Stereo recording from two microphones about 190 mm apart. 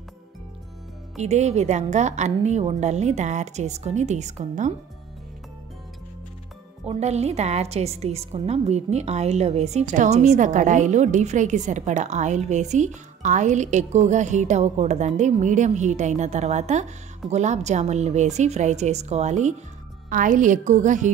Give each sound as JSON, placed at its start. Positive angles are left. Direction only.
{"t": 1.1, "sound": "a woman's voice", "side_deg": -35}
{"t": 6.9, "sound": "a woman's voice", "side_deg": -35}